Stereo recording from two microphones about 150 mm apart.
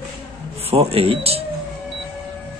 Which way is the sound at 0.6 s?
40° right (ahead or behind).